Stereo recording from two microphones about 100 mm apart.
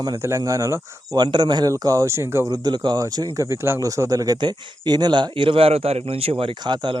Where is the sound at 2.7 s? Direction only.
50° right (ahead or behind).